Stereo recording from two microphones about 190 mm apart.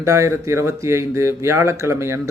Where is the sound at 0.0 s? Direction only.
15° right (ahead or behind).